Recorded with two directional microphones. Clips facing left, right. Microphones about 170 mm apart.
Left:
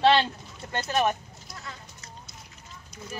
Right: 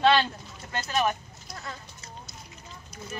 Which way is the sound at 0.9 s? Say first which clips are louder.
Left 1 dB; 45° left (ahead or behind).